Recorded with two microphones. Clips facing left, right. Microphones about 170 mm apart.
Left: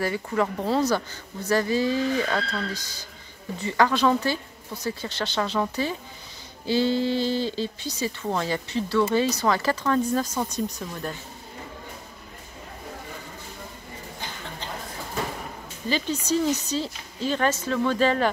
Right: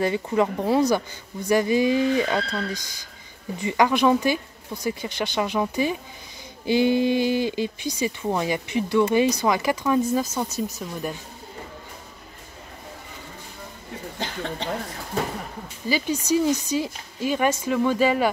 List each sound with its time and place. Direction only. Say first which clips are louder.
0.0 s speech: right 3 dB; 20° right (ahead or behind)
14.2 s a sound: right 9 dB; 75° right (ahead or behind)
15.9 s speech: right 2 dB; 10° right (ahead or behind)